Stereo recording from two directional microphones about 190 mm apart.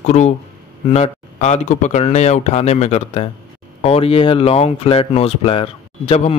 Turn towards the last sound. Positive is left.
turn(degrees=30)  # may be behind; listen again after turning